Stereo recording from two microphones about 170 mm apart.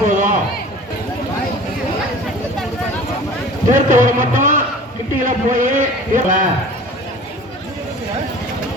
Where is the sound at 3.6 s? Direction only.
50° right (ahead or behind).